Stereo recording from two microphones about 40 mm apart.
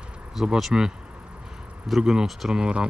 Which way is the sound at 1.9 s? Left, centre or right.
Centre.